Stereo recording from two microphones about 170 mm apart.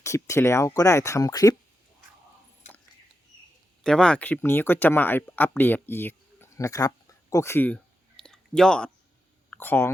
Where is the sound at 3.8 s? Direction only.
5° left (ahead or behind).